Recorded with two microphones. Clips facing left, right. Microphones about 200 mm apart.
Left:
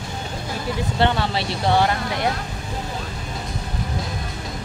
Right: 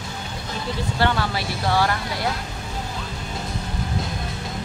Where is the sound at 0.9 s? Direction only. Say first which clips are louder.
Left 2 dB; 25° left (ahead or behind).